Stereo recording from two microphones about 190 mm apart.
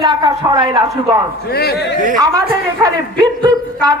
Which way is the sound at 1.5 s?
55° left (ahead or behind).